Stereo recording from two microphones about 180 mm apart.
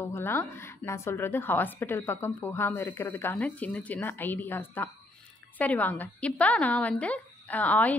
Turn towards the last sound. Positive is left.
turn(degrees=10)  # may be behind; listen again after turning